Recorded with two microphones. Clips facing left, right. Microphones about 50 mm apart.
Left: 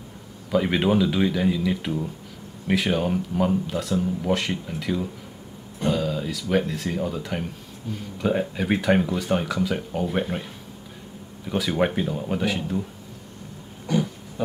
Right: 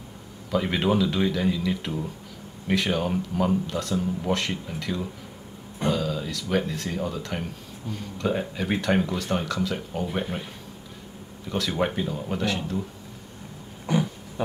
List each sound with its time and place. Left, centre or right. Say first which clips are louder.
0.5 s speech: left 3 dB; centre
11.4 s speech: left 3 dB; centre
13.9 s a sound: left 1 dB; right